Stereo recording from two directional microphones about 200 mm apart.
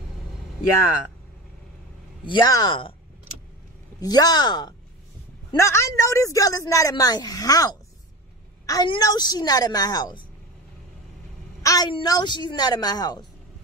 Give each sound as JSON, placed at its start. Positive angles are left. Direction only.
{"t": 2.2, "sound": "a woman's voice", "side_deg": 20}
{"t": 4.0, "sound": "a woman's voice", "side_deg": 20}
{"t": 11.6, "sound": "a woman's voice", "side_deg": 20}